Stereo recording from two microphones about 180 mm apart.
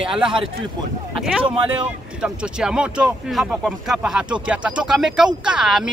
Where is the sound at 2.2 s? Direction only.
5° right (ahead or behind).